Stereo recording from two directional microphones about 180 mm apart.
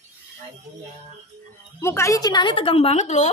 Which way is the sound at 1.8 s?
15° left (ahead or behind).